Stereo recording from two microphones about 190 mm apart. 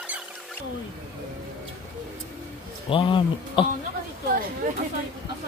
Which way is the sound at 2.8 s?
25° left (ahead or behind).